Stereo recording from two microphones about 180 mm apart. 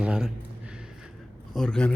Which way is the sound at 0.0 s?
5° right (ahead or behind).